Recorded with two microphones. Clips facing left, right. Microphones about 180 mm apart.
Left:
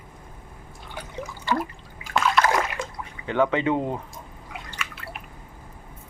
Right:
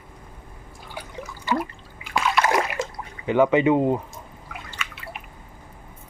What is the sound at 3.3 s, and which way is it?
Speech, 10° right (ahead or behind).